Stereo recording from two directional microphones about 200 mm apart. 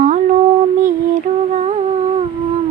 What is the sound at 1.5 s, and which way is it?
Humming, 35° right (ahead or behind).